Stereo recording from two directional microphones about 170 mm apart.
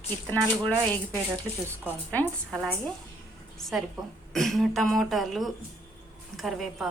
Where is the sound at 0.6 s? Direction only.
10° left (ahead or behind).